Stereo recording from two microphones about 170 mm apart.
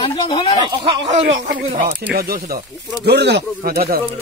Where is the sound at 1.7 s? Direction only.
55° right (ahead or behind).